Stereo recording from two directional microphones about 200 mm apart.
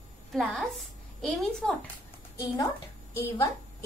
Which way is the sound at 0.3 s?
Centre (ahead or behind).